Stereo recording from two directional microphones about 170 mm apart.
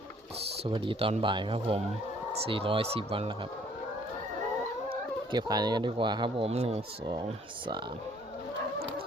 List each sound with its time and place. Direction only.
0.7 s speech: 30° right (ahead or behind)
5.3 s speech: 25° right (ahead or behind)